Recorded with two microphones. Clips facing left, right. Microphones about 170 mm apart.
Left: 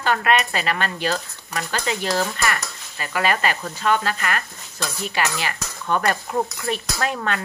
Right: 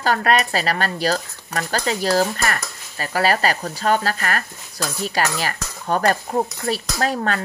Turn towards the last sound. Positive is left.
turn(degrees=-35)  # may be behind; listen again after turning